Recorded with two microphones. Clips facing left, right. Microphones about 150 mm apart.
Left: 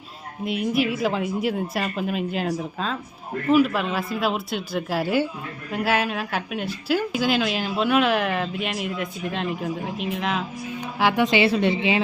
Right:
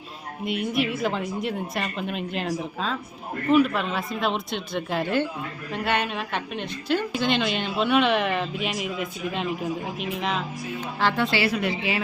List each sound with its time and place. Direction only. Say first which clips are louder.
0.4 s a woman's voice: left 2 dB; centre (ahead or behind)
11.0 s a woman's voice: left 4 dB; 15° left (ahead or behind)